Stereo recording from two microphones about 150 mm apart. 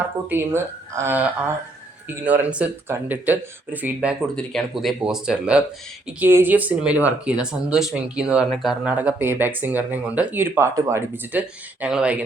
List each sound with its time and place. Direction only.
0.3 s speech: 15° right (ahead or behind)